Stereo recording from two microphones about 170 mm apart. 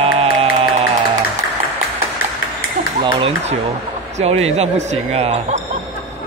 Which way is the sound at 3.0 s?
30° right (ahead or behind).